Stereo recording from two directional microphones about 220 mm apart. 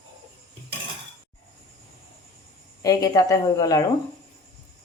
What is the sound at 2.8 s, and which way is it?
A woman's voice, 15° left (ahead or behind).